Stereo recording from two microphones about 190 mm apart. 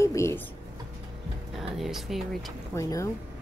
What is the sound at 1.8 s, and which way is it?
Speech, centre (ahead or behind).